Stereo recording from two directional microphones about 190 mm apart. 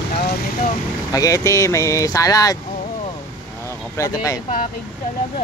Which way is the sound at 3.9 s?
15° left (ahead or behind).